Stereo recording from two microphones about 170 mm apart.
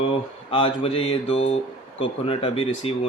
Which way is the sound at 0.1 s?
30° left (ahead or behind).